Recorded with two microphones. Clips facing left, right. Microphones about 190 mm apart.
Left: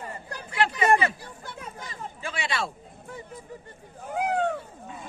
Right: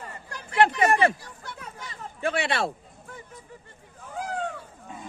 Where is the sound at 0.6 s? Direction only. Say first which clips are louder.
Right 2 dB; 55° right (ahead or behind).